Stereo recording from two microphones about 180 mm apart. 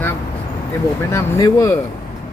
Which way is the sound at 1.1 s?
15° left (ahead or behind).